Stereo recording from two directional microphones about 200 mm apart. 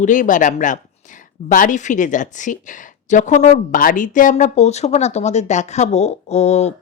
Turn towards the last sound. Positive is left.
turn(degrees=35)  # may be behind; listen again after turning